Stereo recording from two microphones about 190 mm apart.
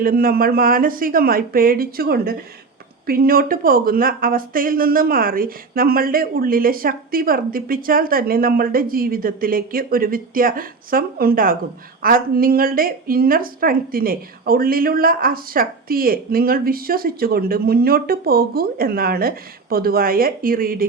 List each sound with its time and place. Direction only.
0.0 s a woman's voice: 50° right (ahead or behind)